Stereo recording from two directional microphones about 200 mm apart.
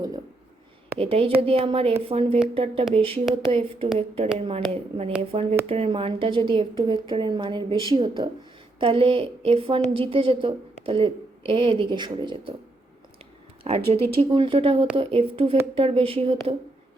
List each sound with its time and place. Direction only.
0.9 s a woman's voice: 30° right (ahead or behind)
13.7 s a woman's voice: 30° right (ahead or behind)